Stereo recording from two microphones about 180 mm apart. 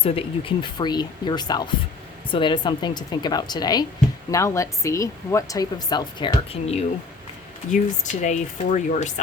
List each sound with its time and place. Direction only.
0.0 s speech: 30° left (ahead or behind)
7.7 s speech: 40° left (ahead or behind)